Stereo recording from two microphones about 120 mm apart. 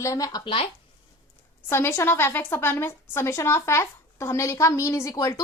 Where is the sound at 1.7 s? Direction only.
20° left (ahead or behind).